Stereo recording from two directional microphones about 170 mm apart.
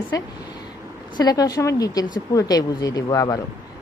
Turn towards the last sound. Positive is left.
turn(degrees=20)  # may be behind; listen again after turning